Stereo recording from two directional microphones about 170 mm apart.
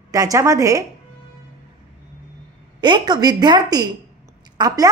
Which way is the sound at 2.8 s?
25° right (ahead or behind).